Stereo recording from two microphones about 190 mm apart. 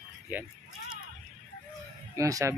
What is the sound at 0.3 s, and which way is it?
Speech, 10° right (ahead or behind).